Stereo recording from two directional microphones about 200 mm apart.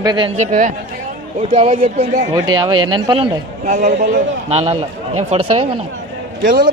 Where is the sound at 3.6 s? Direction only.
40° right (ahead or behind).